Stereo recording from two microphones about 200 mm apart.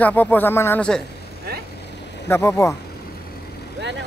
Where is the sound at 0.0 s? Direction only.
10° left (ahead or behind).